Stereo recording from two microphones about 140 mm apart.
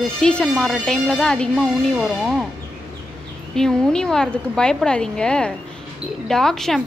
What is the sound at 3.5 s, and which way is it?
A woman's voice, 5° left (ahead or behind).